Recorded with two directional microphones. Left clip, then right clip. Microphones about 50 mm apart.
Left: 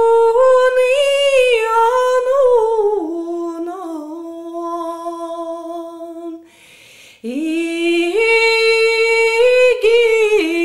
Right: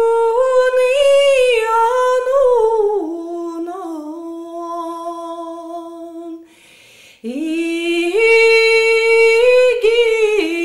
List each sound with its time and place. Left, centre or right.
0.0 s humming: left
7.2 s humming: left